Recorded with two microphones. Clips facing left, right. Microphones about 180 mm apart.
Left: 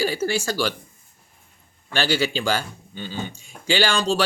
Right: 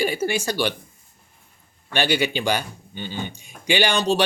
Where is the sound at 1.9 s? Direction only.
20° right (ahead or behind).